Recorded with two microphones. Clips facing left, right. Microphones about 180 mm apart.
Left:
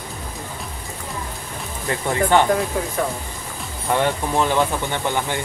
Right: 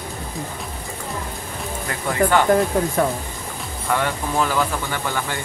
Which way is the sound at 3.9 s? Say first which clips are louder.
Left 2 dB; 25° left (ahead or behind).